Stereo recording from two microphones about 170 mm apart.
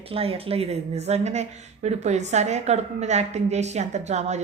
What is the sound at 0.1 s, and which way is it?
A woman's voice, 35° right (ahead or behind).